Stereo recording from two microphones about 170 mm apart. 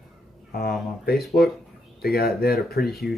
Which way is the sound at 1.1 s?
65° left (ahead or behind).